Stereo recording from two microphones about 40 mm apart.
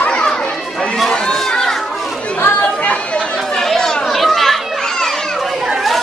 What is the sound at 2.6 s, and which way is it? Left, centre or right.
Chatter, left.